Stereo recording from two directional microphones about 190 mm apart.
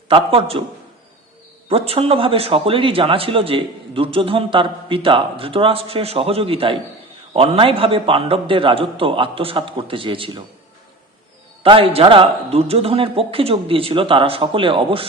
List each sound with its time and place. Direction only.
0.1 s a man's voice: 30° right (ahead or behind)
1.7 s a man's voice: 30° right (ahead or behind)
11.6 s a man's voice: 30° right (ahead or behind)